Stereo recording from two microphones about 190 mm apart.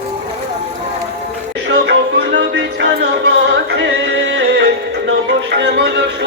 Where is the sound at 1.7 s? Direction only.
65° right (ahead or behind).